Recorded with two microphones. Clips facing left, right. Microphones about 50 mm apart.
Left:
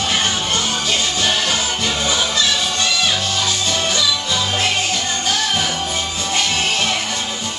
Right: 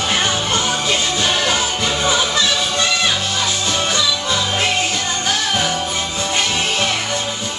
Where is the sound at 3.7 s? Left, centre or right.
Right.